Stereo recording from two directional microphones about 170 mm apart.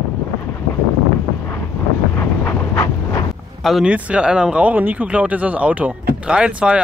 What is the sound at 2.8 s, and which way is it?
Wind noise, 20° left (ahead or behind).